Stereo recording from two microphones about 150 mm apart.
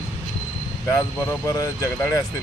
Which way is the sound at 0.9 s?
20° left (ahead or behind).